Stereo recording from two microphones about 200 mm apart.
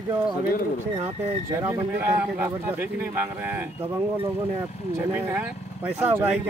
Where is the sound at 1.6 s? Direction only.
10° right (ahead or behind).